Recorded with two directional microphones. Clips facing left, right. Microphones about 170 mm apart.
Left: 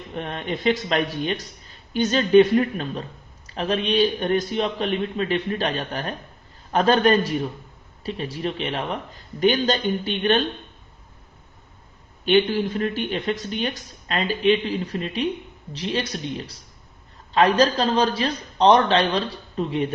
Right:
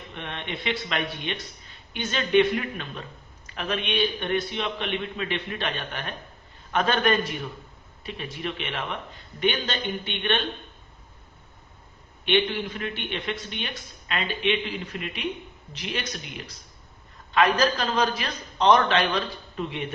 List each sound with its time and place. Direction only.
0.1 s speech: 40° left (ahead or behind)
12.2 s speech: 35° left (ahead or behind)